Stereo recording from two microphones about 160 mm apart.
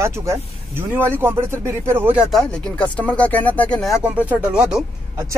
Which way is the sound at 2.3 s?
5° left (ahead or behind).